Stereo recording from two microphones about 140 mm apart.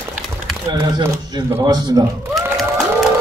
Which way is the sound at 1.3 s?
20° right (ahead or behind).